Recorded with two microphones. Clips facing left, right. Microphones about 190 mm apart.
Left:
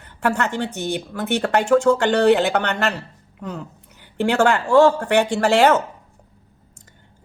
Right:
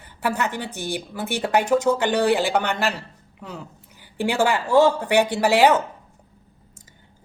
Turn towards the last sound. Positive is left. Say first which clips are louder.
# left 1 dB
turn(degrees=-10)  # may be behind; listen again after turning